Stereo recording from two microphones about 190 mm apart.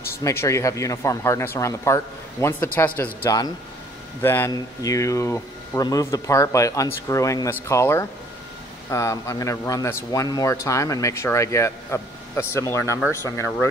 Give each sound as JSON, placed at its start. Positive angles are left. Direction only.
{"t": 0.2, "sound": "speech", "side_deg": 15}